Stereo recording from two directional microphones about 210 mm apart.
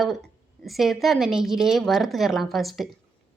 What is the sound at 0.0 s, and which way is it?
Speech, centre (ahead or behind).